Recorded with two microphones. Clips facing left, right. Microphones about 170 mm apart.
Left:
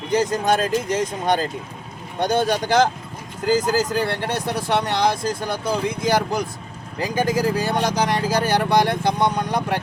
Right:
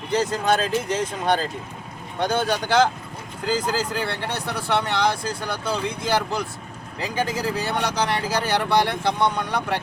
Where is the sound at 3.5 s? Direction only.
40° left (ahead or behind).